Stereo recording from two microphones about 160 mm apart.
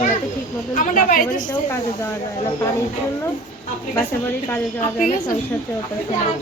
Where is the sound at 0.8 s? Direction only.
55° left (ahead or behind).